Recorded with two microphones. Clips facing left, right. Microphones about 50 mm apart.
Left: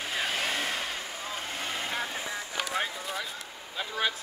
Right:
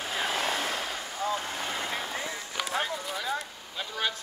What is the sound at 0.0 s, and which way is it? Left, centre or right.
Vehicle, centre.